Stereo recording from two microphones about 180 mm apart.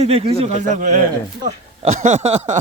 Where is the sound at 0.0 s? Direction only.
35° right (ahead or behind).